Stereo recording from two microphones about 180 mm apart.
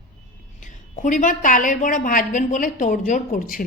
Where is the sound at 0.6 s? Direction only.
45° left (ahead or behind).